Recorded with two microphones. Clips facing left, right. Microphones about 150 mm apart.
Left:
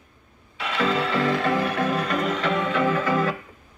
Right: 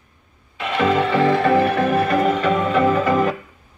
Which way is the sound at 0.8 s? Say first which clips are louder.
Right 6 dB; 55° right (ahead or behind).